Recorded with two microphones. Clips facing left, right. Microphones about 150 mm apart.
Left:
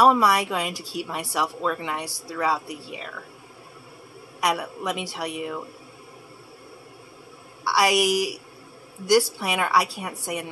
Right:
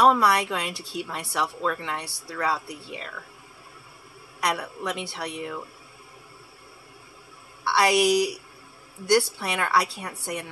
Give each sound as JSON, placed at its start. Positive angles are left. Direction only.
{"t": 0.0, "sound": "speech", "side_deg": 10}
{"t": 4.4, "sound": "speech", "side_deg": 10}
{"t": 7.6, "sound": "speech", "side_deg": 10}